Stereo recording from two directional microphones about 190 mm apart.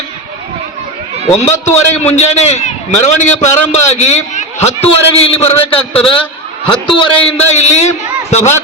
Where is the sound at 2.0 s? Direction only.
35° left (ahead or behind).